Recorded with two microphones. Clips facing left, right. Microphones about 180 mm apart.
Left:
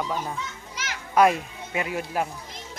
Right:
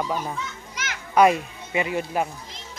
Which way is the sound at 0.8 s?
30° left (ahead or behind).